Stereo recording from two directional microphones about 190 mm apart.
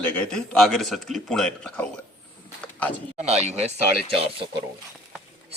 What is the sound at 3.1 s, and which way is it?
Speech, 35° right (ahead or behind).